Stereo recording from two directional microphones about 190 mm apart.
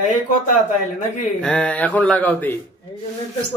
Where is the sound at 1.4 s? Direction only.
5° left (ahead or behind).